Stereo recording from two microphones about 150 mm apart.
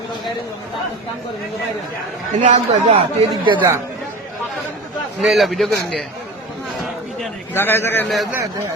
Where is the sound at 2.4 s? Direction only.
50° right (ahead or behind).